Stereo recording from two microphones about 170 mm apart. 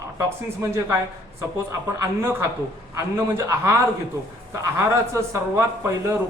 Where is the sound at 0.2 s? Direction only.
15° right (ahead or behind).